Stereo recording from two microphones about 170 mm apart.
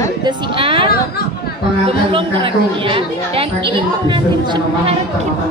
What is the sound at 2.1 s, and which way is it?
A woman's voice, 30° right (ahead or behind).